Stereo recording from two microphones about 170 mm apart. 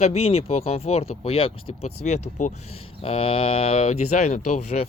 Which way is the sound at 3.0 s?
35° left (ahead or behind).